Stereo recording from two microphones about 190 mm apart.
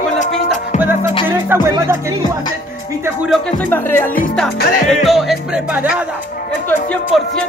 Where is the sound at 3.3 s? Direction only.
5° left (ahead or behind).